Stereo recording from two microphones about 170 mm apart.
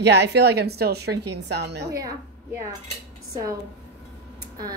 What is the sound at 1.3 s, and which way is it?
Speech, 85° right.